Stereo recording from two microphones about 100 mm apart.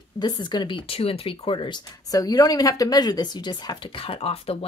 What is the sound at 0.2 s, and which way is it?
Speech, 45° left (ahead or behind).